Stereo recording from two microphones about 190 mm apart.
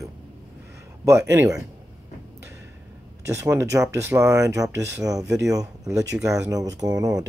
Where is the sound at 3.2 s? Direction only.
15° right (ahead or behind).